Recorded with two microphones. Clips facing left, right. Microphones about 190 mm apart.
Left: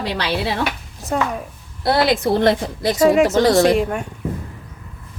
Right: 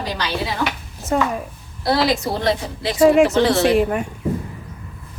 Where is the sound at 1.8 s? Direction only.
55° left (ahead or behind).